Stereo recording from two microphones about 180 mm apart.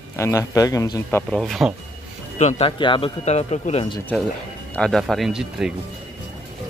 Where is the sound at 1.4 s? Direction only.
Centre (ahead or behind).